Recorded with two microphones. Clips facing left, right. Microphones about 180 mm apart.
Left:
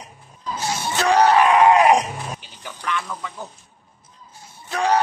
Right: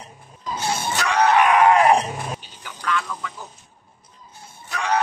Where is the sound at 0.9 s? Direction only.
30° left (ahead or behind).